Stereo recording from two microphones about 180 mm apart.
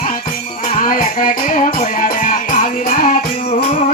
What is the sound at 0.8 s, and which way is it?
Music, 50° left (ahead or behind).